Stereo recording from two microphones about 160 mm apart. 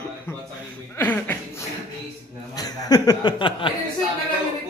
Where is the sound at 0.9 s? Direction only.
15° left (ahead or behind).